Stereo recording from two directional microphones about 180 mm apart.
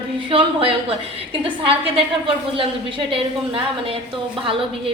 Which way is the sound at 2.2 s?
30° right (ahead or behind).